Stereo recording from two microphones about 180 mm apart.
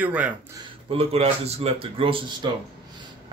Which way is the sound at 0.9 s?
35° right (ahead or behind).